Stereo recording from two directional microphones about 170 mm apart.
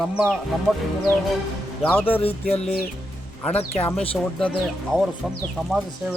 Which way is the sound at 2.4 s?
40° left (ahead or behind).